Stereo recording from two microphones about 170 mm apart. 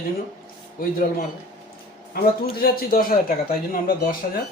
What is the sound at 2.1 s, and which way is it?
Speech, 60° left (ahead or behind).